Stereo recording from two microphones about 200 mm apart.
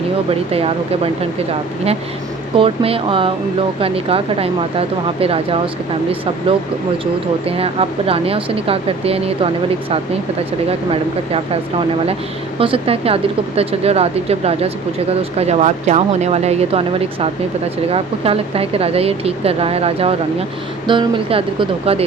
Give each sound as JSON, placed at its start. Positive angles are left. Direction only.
{"t": 0.3, "sound": "speech", "side_deg": -30}
{"t": 2.6, "sound": "speech", "side_deg": -30}
{"t": 7.0, "sound": "speech", "side_deg": -30}
{"t": 12.5, "sound": "speech", "side_deg": -30}